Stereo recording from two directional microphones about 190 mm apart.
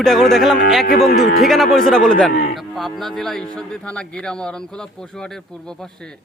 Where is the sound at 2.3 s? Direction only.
45° left (ahead or behind).